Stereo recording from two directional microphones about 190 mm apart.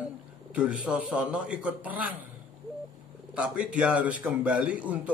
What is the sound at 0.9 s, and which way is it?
A man's voice, 5° right (ahead or behind).